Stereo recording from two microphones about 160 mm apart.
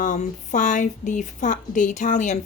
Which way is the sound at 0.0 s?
55° left (ahead or behind).